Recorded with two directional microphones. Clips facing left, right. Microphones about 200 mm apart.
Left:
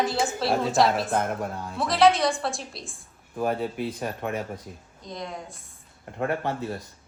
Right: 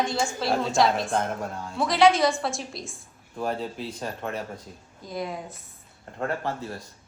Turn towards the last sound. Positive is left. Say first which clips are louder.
# left 2 dB
turn(degrees=20)  # may be behind; listen again after turning